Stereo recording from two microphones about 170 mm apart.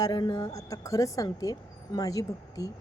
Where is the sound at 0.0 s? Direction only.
25° left (ahead or behind).